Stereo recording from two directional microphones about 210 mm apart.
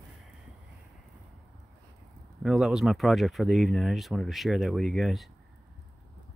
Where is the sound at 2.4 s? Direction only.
Centre (ahead or behind).